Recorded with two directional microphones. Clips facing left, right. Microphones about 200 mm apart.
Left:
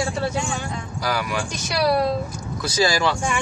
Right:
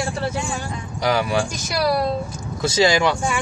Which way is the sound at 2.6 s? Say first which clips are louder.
Right 3 dB; 25° right (ahead or behind).